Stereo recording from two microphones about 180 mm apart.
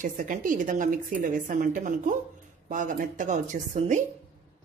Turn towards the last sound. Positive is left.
turn(degrees=-45)  # may be behind; listen again after turning